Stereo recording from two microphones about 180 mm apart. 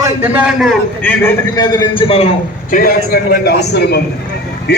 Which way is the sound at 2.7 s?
55° left (ahead or behind).